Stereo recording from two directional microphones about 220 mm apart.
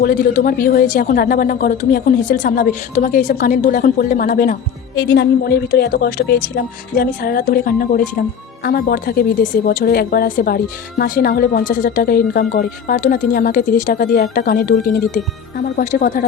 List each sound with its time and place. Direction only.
0.0 s speech: 40° left (ahead or behind)
15.8 s speech: 35° left (ahead or behind)